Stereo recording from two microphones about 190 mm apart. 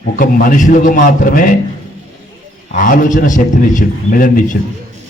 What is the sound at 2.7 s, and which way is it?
A man's voice, 45° left (ahead or behind).